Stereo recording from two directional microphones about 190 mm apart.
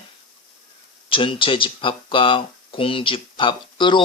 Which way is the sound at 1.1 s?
25° left (ahead or behind).